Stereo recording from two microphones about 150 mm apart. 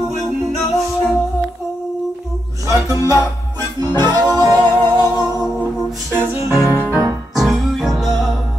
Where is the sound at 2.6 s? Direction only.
20° right (ahead or behind).